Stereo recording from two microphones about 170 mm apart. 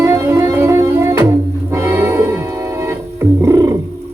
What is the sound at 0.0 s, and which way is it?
Music, 15° right (ahead or behind).